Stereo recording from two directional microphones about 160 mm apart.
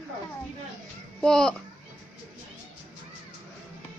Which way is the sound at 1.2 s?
5° left (ahead or behind).